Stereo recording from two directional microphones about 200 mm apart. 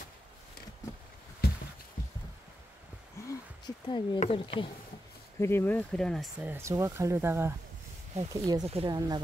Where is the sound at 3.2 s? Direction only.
15° left (ahead or behind).